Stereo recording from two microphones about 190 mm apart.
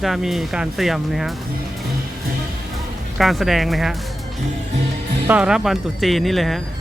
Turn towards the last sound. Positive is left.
turn(degrees=0)  # may be behind; listen again after turning